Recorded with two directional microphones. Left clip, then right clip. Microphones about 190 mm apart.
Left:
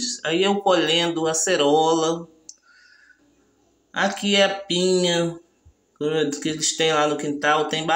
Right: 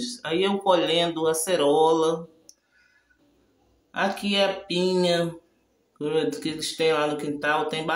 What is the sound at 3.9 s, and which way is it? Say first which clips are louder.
Speech: left 4 dB; 10° left (ahead or behind).